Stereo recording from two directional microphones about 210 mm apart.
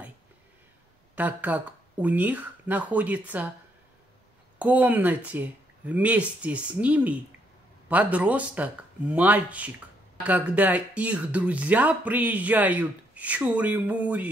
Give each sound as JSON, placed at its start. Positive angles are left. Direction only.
{"t": 1.1, "sound": "speech", "side_deg": -10}
{"t": 4.6, "sound": "speech", "side_deg": -5}